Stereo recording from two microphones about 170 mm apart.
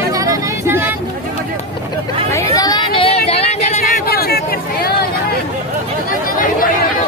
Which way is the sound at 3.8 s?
60° left (ahead or behind).